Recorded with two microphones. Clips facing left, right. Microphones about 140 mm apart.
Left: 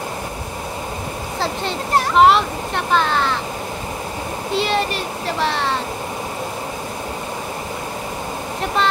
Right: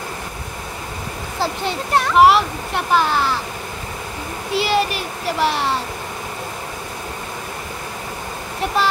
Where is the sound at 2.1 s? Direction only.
5° right (ahead or behind).